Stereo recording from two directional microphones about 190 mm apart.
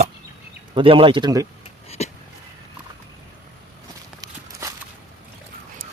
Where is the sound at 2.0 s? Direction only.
35° left (ahead or behind).